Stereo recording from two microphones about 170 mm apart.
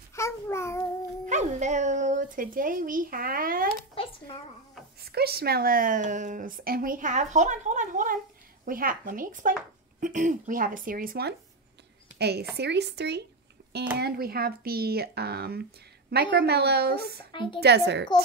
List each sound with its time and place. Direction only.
0.1 s child singing: 15° left (ahead or behind)
1.2 s speech: 45° right (ahead or behind)
3.9 s a sound: 30° left (ahead or behind)
5.0 s speech: 65° right (ahead or behind)
13.9 s speech: 65° right (ahead or behind)
17.3 s a woman's voice: 30° left (ahead or behind)
17.6 s a woman's voice: 80° right